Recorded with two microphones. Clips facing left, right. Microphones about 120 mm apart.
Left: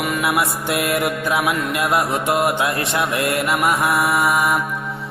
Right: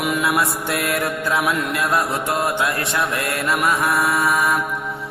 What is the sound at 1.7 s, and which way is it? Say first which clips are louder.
Mantra: left 1 dB; 20° left (ahead or behind).